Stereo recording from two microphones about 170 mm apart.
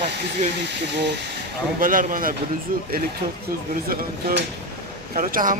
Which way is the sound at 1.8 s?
55° right (ahead or behind).